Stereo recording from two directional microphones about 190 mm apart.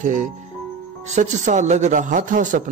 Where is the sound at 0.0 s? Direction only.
40° right (ahead or behind).